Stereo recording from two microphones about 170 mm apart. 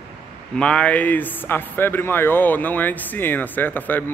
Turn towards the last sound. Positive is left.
turn(degrees=10)  # may be behind; listen again after turning